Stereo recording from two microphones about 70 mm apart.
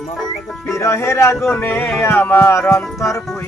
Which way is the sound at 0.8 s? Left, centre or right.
Left.